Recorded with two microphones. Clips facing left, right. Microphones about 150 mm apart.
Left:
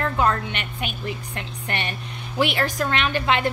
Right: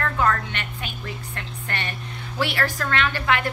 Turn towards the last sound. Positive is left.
turn(degrees=20)  # may be behind; listen again after turning